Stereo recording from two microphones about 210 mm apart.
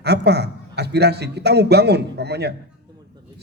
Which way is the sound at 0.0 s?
50° right (ahead or behind).